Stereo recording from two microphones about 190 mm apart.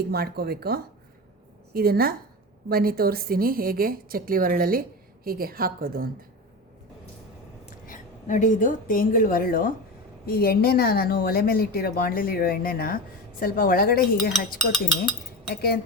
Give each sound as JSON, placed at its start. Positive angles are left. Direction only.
{"t": 0.1, "sound": "a woman's voice", "side_deg": -55}
{"t": 7.9, "sound": "a woman's voice", "side_deg": 45}
{"t": 14.3, "sound": "speech", "side_deg": 0}
{"t": 15.4, "sound": "speech", "side_deg": 55}